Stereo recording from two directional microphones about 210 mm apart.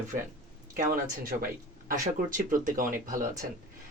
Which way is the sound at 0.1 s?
40° right (ahead or behind).